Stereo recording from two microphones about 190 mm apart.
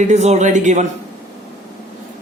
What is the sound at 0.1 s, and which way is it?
Speech, 35° right (ahead or behind).